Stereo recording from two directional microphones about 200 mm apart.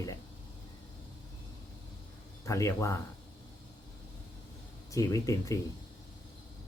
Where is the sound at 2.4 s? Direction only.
15° left (ahead or behind).